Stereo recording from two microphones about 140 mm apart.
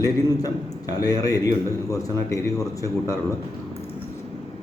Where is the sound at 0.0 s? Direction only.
25° left (ahead or behind).